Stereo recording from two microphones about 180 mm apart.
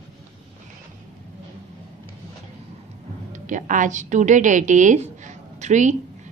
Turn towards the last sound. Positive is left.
turn(degrees=-40)  # may be behind; listen again after turning